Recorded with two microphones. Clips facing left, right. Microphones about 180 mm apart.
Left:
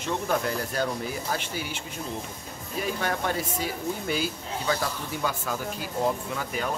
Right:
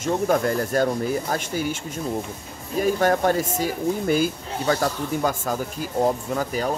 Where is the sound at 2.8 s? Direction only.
45° right (ahead or behind).